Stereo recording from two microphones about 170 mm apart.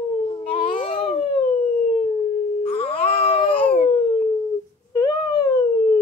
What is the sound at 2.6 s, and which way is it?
Baby cry, 35° left (ahead or behind).